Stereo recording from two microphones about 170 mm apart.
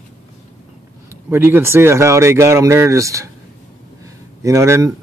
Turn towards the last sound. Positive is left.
turn(degrees=-15)  # may be behind; listen again after turning